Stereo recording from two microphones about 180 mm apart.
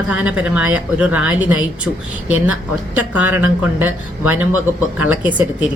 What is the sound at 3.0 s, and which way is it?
Speech, 10° right (ahead or behind).